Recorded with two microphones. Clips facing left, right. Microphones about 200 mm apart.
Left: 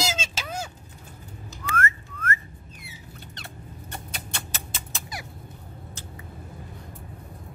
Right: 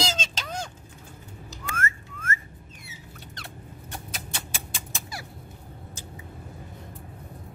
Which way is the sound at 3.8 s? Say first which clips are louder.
Even; centre (ahead or behind).